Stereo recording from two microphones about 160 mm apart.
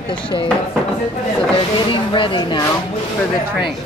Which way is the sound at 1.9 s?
30° left (ahead or behind).